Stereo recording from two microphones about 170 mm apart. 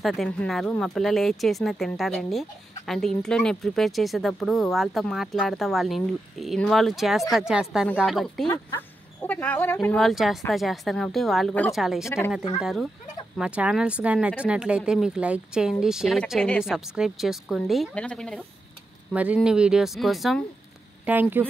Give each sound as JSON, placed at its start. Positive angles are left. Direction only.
{"t": 0.0, "sound": "speech", "side_deg": 0}
{"t": 8.7, "sound": "speech", "side_deg": 10}
{"t": 12.0, "sound": "speech", "side_deg": 15}
{"t": 12.5, "sound": "speech", "side_deg": -5}
{"t": 19.1, "sound": "speech", "side_deg": -5}
{"t": 21.0, "sound": "speech", "side_deg": -10}